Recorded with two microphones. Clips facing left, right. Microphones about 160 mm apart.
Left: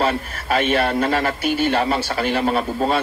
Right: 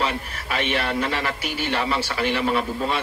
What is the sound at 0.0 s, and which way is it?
A man's voice, 50° left (ahead or behind).